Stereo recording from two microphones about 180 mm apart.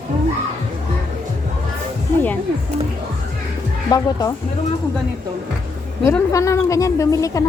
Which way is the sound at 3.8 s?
20° left (ahead or behind).